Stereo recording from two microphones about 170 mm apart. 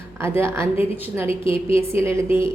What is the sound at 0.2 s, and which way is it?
Speech, 15° right (ahead or behind).